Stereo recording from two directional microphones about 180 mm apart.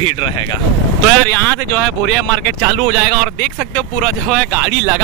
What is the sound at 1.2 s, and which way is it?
Speech, 10° left (ahead or behind).